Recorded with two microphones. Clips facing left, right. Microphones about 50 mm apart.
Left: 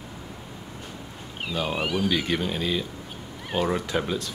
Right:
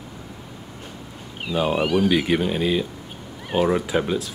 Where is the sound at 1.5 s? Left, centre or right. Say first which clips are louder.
Right 7 dB; centre.